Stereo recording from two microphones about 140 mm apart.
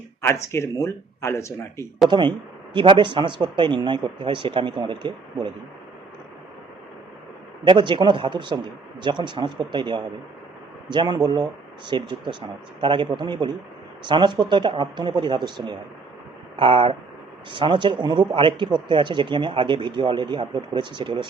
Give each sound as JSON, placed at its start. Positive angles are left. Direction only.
{"t": 0.4, "sound": "speech", "side_deg": 20}
{"t": 2.0, "sound": "speech", "side_deg": -35}
{"t": 7.6, "sound": "speech", "side_deg": -35}